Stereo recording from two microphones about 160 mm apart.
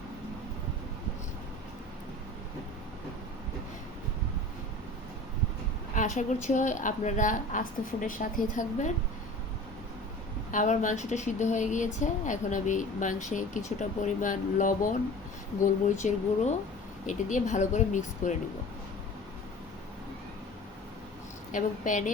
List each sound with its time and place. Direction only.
5.9 s speech: 55° left (ahead or behind)
10.5 s speech: 50° left (ahead or behind)
16.0 s speech: 50° left (ahead or behind)
21.5 s speech: 50° left (ahead or behind)